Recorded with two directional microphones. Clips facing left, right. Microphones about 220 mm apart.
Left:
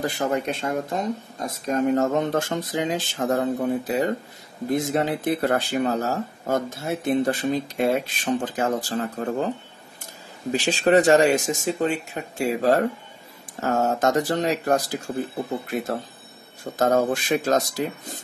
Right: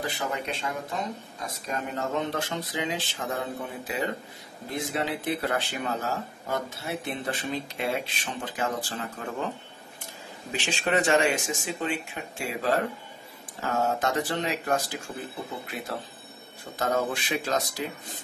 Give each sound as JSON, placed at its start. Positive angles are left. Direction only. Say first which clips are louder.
{"t": 0.0, "sound": "speech", "louder": "left 7 dB", "side_deg": 45}
{"t": 10.5, "sound": "speech", "louder": "left 9 dB", "side_deg": 40}